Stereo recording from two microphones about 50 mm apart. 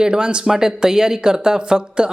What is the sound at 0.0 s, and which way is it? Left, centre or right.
A man's voice, centre.